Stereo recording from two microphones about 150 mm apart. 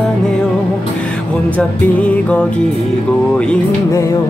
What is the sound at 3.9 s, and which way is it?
Music, 20° left (ahead or behind).